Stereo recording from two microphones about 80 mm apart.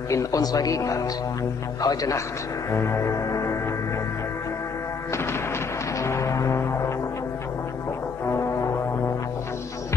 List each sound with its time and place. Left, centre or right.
0.1 s speech: left
2.7 s music: left
5.9 s music: left